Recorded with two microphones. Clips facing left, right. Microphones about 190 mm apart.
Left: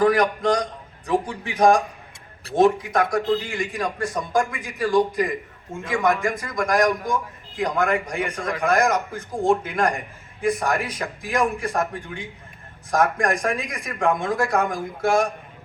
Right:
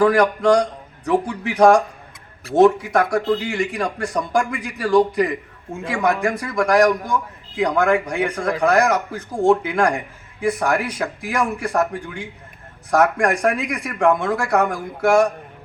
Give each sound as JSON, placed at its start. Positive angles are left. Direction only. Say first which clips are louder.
{"t": 0.0, "sound": "a man's voice", "louder": "right 3 dB", "side_deg": -70}